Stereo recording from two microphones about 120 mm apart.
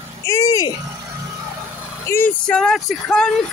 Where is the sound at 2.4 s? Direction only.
5° left (ahead or behind).